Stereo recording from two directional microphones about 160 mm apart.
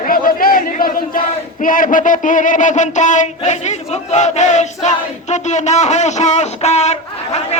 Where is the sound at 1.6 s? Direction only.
60° left (ahead or behind); by 7.0 s 45° left (ahead or behind).